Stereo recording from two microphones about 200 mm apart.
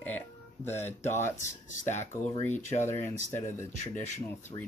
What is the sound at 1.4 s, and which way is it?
Speech, 35° left (ahead or behind).